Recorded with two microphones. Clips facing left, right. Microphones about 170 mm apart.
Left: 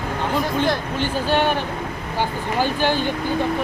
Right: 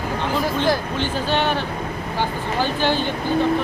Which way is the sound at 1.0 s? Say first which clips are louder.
Left 1 dB; 10° left (ahead or behind).